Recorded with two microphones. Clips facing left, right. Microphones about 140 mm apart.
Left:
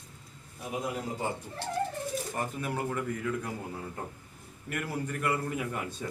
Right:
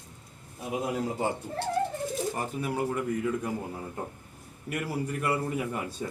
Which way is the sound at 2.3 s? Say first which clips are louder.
Right 2 dB; 10° right (ahead or behind).